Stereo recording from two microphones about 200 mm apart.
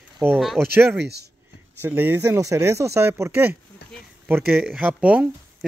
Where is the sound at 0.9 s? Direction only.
55° right (ahead or behind).